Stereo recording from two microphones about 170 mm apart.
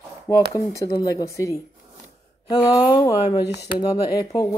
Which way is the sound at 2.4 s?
20° left (ahead or behind).